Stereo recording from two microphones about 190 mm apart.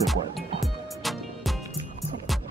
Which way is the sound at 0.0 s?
Centre (ahead or behind).